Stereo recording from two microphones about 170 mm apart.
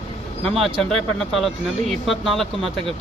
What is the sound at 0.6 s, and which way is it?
Speech, centre (ahead or behind).